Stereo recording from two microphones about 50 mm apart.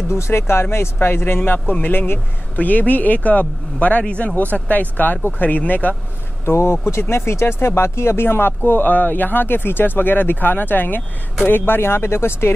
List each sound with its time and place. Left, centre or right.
0.1 s speech: left
2.5 s speech: left
6.4 s speech: left